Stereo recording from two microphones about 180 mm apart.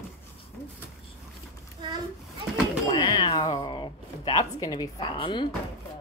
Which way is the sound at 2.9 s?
25° left (ahead or behind).